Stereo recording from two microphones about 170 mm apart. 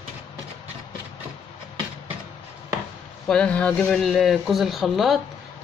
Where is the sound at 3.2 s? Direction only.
5° left (ahead or behind).